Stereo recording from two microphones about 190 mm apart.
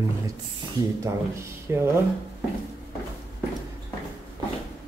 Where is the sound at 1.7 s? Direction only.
15° right (ahead or behind).